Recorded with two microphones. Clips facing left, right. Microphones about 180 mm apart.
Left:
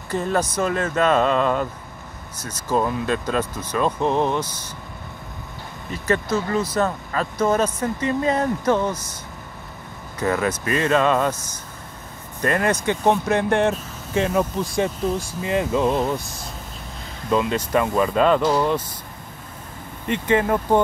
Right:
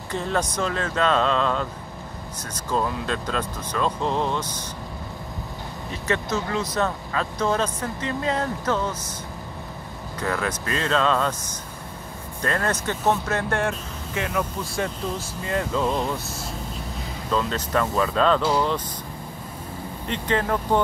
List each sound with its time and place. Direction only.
0.1 s speech: 5° left (ahead or behind)
6.5 s speech: 5° left (ahead or behind)
10.2 s speech: 5° left (ahead or behind)
12.4 s speech: 10° left (ahead or behind)
14.1 s speech: 30° left (ahead or behind)
14.6 s speech: 15° left (ahead or behind)
20.1 s speech: 10° left (ahead or behind)